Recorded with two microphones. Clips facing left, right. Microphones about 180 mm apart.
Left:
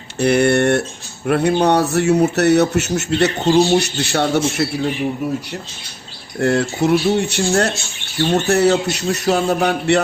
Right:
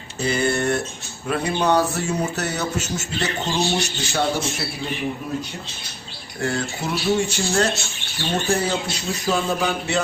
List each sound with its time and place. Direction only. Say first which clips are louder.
0.2 s speech: left 8 dB; 70° left (ahead or behind)
6.4 s speech: left 9 dB; 65° left (ahead or behind)